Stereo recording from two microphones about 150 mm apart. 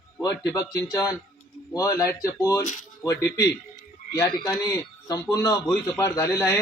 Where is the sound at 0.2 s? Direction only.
20° left (ahead or behind).